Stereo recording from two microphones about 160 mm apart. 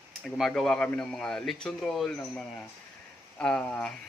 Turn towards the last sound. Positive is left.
turn(degrees=5)  # may be behind; listen again after turning